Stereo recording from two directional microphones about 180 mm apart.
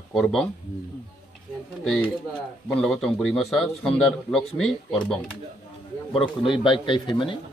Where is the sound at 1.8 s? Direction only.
5° left (ahead or behind).